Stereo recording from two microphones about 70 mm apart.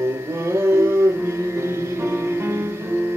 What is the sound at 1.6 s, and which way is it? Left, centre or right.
Music, right.